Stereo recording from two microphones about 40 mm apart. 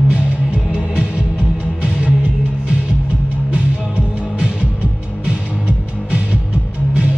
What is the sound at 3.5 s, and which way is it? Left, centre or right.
Music, right.